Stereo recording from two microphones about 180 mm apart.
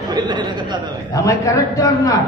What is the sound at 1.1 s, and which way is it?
A man's voice, 15° left (ahead or behind).